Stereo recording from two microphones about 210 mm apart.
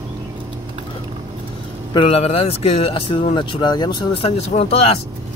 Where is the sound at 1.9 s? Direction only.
25° left (ahead or behind).